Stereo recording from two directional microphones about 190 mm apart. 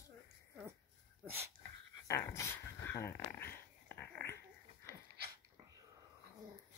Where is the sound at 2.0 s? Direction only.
15° left (ahead or behind).